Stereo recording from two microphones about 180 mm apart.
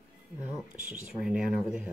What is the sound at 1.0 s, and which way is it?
Speech, 5° right (ahead or behind).